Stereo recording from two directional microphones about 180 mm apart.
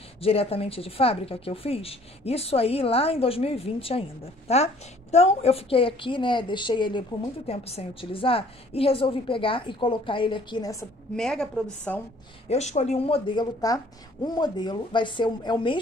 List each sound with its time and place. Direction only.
0.2 s a woman's voice: 35° left (ahead or behind)
11.1 s a woman's voice: 5° left (ahead or behind)
12.4 s a woman's voice: 40° left (ahead or behind)